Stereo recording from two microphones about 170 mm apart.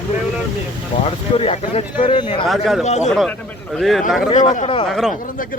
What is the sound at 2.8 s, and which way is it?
Speech, 40° left (ahead or behind).